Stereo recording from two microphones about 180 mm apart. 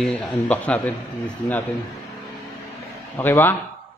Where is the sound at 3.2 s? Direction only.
10° left (ahead or behind).